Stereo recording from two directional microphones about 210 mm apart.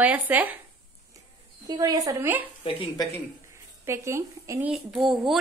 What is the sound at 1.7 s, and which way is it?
Speech, 15° right (ahead or behind).